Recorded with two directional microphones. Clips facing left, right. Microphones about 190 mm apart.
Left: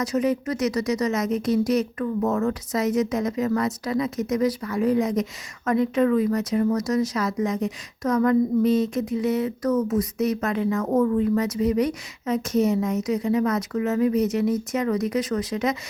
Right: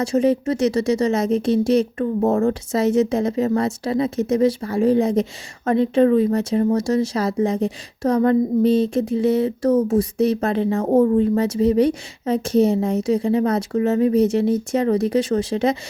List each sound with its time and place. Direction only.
0.0 s speech: 30° right (ahead or behind)